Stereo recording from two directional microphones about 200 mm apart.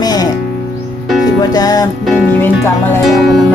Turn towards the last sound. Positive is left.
turn(degrees=0)  # may be behind; listen again after turning